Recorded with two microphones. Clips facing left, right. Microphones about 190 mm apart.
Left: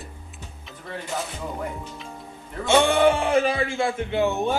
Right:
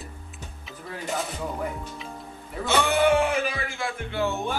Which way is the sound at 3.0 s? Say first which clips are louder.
Left 2 dB; 30° left (ahead or behind).